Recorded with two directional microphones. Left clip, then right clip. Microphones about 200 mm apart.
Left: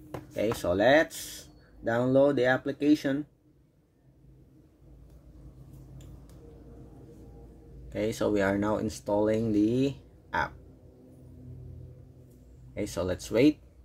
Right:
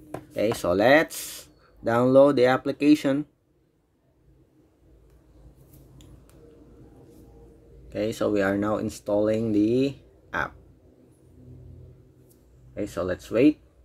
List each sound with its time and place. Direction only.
0.3 s speech: 20° right (ahead or behind)
7.9 s speech: 10° right (ahead or behind)
12.7 s speech: centre (ahead or behind)